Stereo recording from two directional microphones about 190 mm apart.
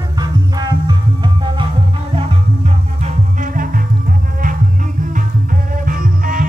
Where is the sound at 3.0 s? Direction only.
45° right (ahead or behind).